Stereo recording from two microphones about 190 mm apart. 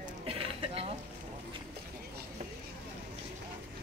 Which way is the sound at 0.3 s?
30° right (ahead or behind).